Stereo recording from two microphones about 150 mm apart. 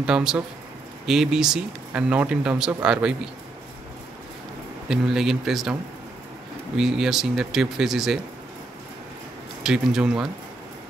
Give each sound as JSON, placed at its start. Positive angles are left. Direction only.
{"t": 0.0, "sound": "speech", "side_deg": -5}
{"t": 4.8, "sound": "speech", "side_deg": -5}
{"t": 6.8, "sound": "speech", "side_deg": 0}
{"t": 9.6, "sound": "speech", "side_deg": -5}